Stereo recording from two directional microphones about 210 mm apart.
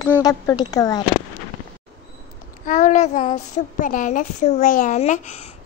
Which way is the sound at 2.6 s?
35° left (ahead or behind).